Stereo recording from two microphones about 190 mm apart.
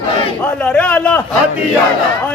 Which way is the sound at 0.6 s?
5° left (ahead or behind).